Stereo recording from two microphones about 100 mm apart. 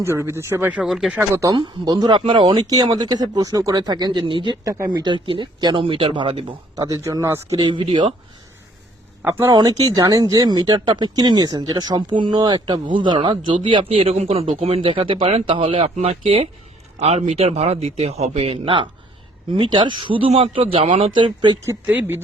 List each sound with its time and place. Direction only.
0.0 s speech: 25° right (ahead or behind)
0.7 s speech: 5° right (ahead or behind)
1.5 s speech: 40° right (ahead or behind)
2.6 s speech: 40° right (ahead or behind)
4.6 s speech: 30° right (ahead or behind)
4.9 s speech: 50° right (ahead or behind)
6.7 s speech: 35° right (ahead or behind)
7.6 s speech: 55° right (ahead or behind)
9.2 s speech: 25° right (ahead or behind)
9.6 s speech: 40° right (ahead or behind); by 16.5 s 80° right
17.0 s a man's voice: 90° right; by 21.6 s 50° right (ahead or behind)
21.8 s speech: 15° right (ahead or behind)